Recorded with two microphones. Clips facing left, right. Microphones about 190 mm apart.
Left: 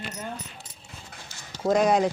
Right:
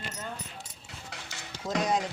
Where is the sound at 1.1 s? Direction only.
90° right.